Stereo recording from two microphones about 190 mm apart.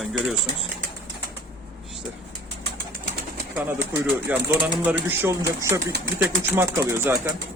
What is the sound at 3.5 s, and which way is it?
Speech, 10° right (ahead or behind).